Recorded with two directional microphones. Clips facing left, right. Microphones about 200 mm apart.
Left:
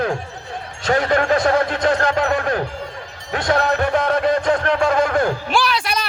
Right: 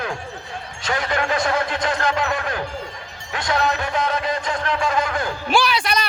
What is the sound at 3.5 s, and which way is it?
A man's voice, 55° left (ahead or behind).